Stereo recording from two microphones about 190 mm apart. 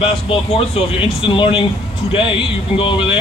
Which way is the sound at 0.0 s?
30° left (ahead or behind).